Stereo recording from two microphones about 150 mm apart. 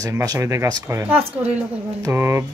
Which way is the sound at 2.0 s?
15° right (ahead or behind).